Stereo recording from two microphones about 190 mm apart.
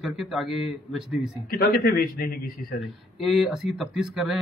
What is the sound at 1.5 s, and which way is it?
Speech, 55° left (ahead or behind).